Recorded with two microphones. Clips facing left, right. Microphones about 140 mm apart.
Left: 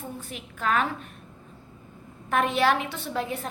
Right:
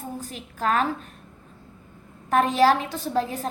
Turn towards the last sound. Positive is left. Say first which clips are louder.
# right 4 dB
turn(degrees=-35)  # may be behind; listen again after turning